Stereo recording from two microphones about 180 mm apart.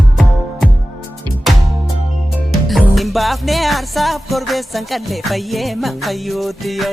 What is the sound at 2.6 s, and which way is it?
Music, centre (ahead or behind).